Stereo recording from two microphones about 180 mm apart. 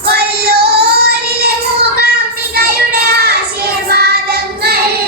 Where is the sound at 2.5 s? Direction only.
60° right (ahead or behind).